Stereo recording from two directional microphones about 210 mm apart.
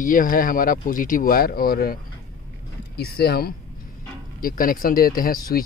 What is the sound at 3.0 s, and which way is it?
Speech, 50° left (ahead or behind).